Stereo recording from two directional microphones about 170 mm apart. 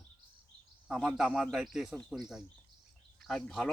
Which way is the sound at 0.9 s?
5° right (ahead or behind).